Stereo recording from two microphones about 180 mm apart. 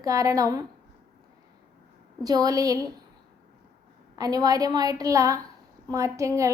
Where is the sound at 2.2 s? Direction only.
20° right (ahead or behind).